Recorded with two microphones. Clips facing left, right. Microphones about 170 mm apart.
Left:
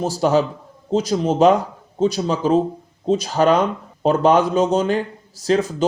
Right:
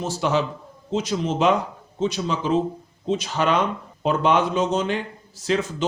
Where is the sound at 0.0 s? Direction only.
40° left (ahead or behind).